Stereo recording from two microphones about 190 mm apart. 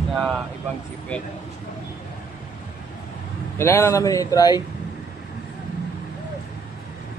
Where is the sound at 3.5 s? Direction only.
15° left (ahead or behind).